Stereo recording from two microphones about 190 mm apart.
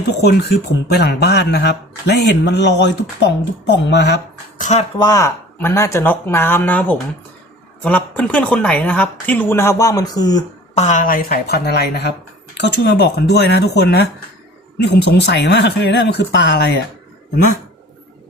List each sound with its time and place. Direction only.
0.9 s a man's voice: 60° left (ahead or behind)
4.6 s speech: 35° left (ahead or behind)
4.9 s speech: 20° left (ahead or behind)
10.8 s a man's voice: 40° left (ahead or behind); by 16.8 s 65° left (ahead or behind)